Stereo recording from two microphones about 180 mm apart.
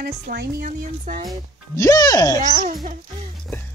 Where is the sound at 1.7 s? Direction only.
20° left (ahead or behind).